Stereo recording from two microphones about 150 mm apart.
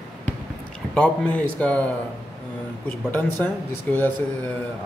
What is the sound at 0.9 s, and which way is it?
Speech, 5° left (ahead or behind).